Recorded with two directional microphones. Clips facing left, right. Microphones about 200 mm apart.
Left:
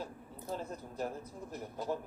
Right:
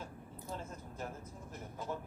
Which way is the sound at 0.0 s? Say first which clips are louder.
Left 4 dB; 35° left (ahead or behind).